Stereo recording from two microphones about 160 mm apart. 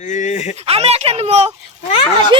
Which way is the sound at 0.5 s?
40° right (ahead or behind).